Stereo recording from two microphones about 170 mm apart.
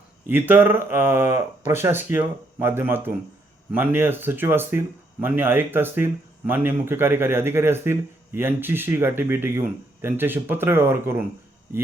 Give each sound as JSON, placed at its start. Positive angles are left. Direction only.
{"t": 0.3, "sound": "a man's voice", "side_deg": -10}